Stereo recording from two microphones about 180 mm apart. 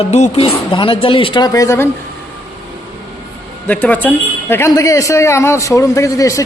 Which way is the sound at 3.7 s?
10° left (ahead or behind).